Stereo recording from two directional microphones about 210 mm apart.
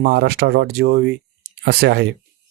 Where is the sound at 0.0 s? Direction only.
50° right (ahead or behind).